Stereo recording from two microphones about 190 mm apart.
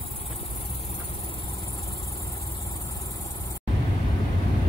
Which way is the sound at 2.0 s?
30° left (ahead or behind).